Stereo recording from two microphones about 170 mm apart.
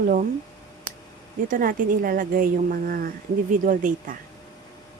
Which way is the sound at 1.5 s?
55° right (ahead or behind).